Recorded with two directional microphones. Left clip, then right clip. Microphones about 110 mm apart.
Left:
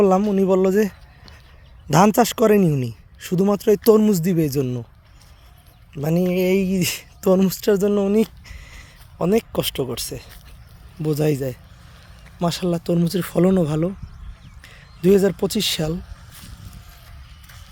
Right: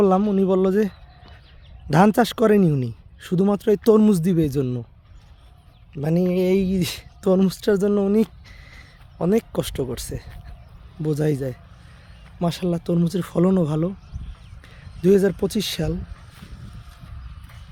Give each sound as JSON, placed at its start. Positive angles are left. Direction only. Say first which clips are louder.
{"t": 0.0, "sound": "speech", "louder": "left 2 dB", "side_deg": -25}
{"t": 3.9, "sound": "speech", "louder": "left 1 dB", "side_deg": -35}
{"t": 5.9, "sound": "speech", "louder": "left 1 dB", "side_deg": -20}